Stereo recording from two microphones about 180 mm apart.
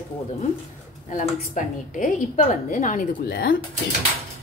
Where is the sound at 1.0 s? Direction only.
45° left (ahead or behind).